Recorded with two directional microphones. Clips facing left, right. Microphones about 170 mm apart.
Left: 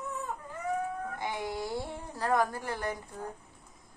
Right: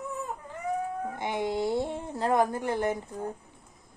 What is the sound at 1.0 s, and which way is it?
A woman's voice, 20° right (ahead or behind).